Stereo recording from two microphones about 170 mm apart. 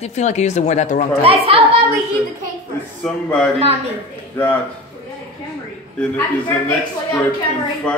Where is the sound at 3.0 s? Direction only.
5° left (ahead or behind).